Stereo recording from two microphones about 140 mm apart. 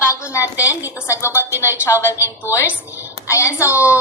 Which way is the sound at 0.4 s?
10° right (ahead or behind).